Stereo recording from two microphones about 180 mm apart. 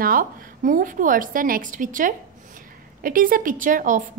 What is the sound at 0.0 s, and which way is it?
A woman's voice, 50° right (ahead or behind).